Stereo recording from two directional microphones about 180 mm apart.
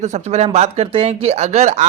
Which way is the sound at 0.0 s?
40° right (ahead or behind).